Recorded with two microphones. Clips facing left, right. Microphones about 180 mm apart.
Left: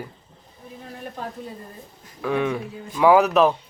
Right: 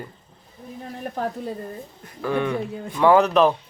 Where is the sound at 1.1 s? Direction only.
55° right (ahead or behind).